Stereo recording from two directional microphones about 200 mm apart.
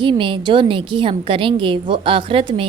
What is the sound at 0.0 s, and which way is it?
A woman's voice, 25° right (ahead or behind).